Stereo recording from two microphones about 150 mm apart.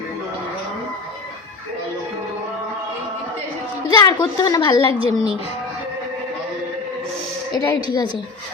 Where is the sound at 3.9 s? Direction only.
25° left (ahead or behind).